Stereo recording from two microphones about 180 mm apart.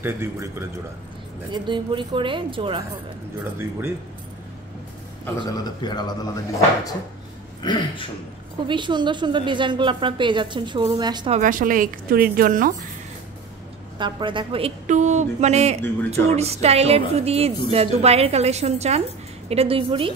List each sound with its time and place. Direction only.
0.0 s a man's voice: 15° right (ahead or behind)
1.5 s a woman's voice: 25° right (ahead or behind)
5.6 s speech: 25° left (ahead or behind)
8.6 s a woman's voice: 25° right (ahead or behind)
11.3 s speech: 45° right (ahead or behind)
13.9 s a woman's voice: 25° right (ahead or behind)
14.9 s speech: 40° right (ahead or behind)